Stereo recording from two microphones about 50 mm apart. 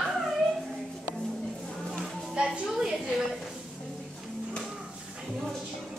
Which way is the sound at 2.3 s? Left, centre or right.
Centre.